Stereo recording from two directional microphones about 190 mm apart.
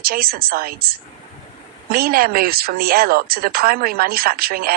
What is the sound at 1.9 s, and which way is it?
Speech, 50° right (ahead or behind).